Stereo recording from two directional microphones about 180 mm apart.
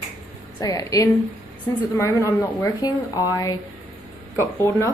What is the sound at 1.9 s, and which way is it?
A woman's voice, 15° left (ahead or behind).